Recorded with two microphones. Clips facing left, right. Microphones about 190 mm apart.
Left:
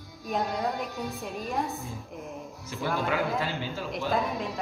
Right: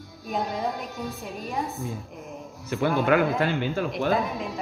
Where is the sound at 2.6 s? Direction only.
60° right (ahead or behind).